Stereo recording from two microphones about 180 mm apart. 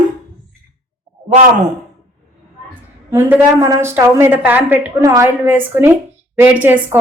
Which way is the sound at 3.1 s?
15° right (ahead or behind).